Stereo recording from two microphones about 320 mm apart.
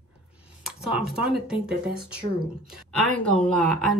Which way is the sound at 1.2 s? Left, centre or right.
Centre.